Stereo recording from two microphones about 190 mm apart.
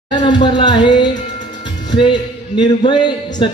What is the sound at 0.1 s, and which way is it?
Music, 25° left (ahead or behind).